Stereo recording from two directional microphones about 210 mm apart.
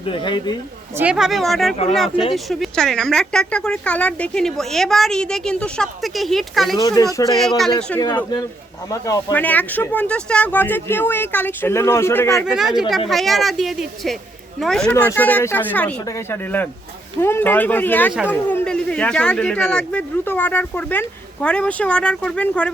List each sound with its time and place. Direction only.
0.0 s speech: 25° left (ahead or behind)
0.9 s speech: 5° right (ahead or behind)
6.7 s speech: 15° left (ahead or behind)
7.3 s speech: centre (ahead or behind)
7.9 s speech: 15° left (ahead or behind)
12.3 s speech: centre (ahead or behind)
18.1 s speech: 5° right (ahead or behind)
18.4 s speech: 5° left (ahead or behind)